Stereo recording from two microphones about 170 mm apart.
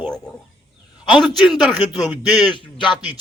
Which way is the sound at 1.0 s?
Centre (ahead or behind).